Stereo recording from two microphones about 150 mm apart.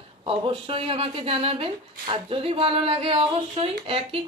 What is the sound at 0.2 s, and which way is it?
Speech, 35° right (ahead or behind).